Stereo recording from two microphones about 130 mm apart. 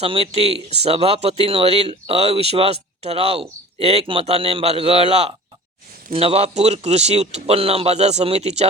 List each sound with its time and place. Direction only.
0.0 s a man's voice: 45° right (ahead or behind)